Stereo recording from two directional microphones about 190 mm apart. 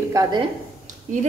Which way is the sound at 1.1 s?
40° right (ahead or behind).